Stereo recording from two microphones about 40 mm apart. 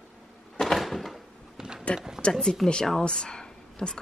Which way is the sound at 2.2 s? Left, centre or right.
Left.